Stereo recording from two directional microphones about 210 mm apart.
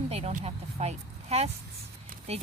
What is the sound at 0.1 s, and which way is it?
Speech, 35° right (ahead or behind).